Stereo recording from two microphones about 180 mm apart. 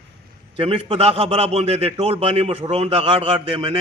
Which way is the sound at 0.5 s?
30° right (ahead or behind).